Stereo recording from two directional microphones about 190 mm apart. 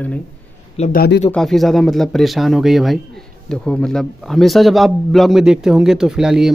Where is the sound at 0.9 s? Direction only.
55° left (ahead or behind).